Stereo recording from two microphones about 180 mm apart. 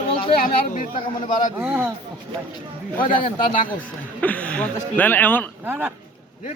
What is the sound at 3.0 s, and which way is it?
Speech, 30° left (ahead or behind).